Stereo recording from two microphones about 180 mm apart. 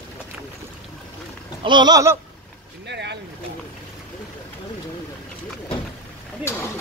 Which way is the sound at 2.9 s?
75° right (ahead or behind).